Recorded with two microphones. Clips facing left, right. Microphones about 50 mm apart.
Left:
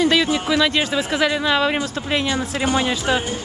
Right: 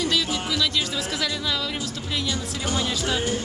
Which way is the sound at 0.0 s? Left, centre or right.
Left.